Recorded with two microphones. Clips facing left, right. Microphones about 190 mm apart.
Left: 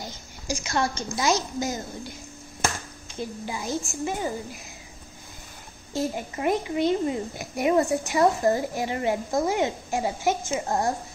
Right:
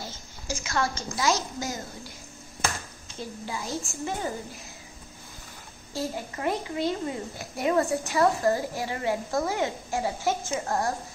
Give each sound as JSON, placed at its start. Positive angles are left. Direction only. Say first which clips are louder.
{"t": 0.0, "sound": "a sound", "louder": "left 2 dB", "side_deg": 15}
{"t": 0.7, "sound": "a woman's voice", "louder": "left 2 dB", "side_deg": 20}
{"t": 3.2, "sound": "a child's voice", "louder": "left 3 dB", "side_deg": 15}
{"t": 5.9, "sound": "a child's voice", "louder": "left 4 dB", "side_deg": 20}